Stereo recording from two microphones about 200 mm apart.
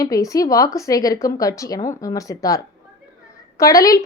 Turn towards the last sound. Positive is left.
turn(degrees=15)  # may be behind; listen again after turning